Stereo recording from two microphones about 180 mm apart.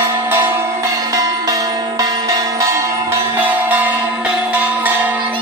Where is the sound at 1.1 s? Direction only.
20° right (ahead or behind).